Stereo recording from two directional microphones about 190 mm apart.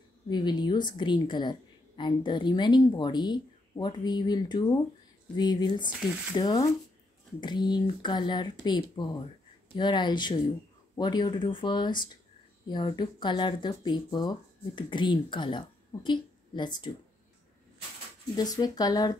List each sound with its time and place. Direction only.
0.3 s a woman's voice: 20° left (ahead or behind)
18.3 s a woman's voice: 20° left (ahead or behind)